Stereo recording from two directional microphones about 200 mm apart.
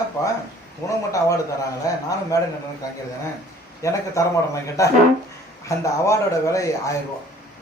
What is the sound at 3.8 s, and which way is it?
Speech, 15° left (ahead or behind).